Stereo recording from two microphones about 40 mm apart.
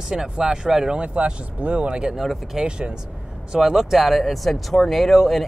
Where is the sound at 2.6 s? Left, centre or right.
Right.